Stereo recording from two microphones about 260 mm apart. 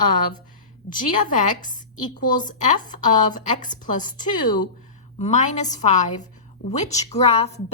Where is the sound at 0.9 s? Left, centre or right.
Left.